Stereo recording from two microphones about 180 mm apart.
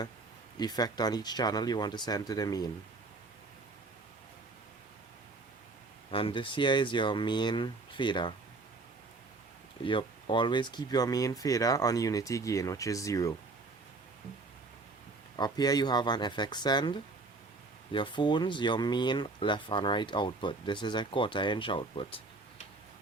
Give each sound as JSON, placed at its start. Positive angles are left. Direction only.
{"t": 0.6, "sound": "speech", "side_deg": 20}
{"t": 6.1, "sound": "speech", "side_deg": 30}
{"t": 9.8, "sound": "speech", "side_deg": 30}
{"t": 15.4, "sound": "speech", "side_deg": 20}